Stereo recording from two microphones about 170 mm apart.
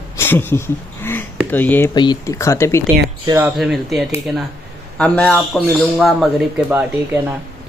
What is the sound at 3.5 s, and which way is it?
A man's voice, centre (ahead or behind).